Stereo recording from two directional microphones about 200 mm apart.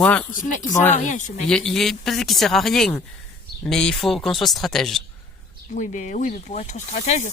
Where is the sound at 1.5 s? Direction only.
5° left (ahead or behind).